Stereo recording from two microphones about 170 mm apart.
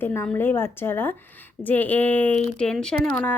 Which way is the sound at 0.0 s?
15° left (ahead or behind).